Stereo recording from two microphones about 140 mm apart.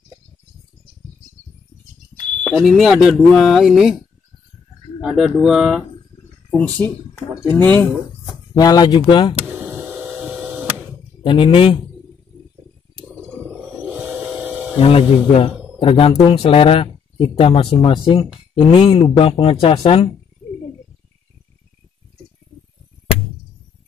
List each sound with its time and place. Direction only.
2.4 s speech: 5° left (ahead or behind)
5.0 s speech: centre (ahead or behind)
7.4 s speech: 15° left (ahead or behind)
8.5 s speech: 30° left (ahead or behind)
9.5 s power windows: 10° right (ahead or behind)
11.2 s speech: 40° left (ahead or behind)
13.5 s wild animals: 10° right (ahead or behind)
14.8 s speech: 40° left (ahead or behind)